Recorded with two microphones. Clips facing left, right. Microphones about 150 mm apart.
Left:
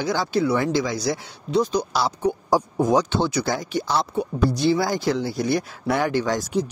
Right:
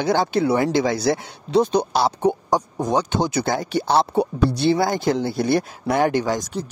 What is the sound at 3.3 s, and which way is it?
Speech, 55° right (ahead or behind).